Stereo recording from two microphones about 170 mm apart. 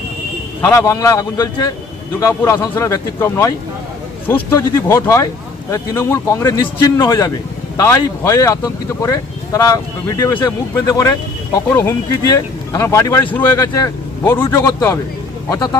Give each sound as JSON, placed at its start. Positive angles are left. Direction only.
{"t": 0.6, "sound": "speech", "side_deg": 20}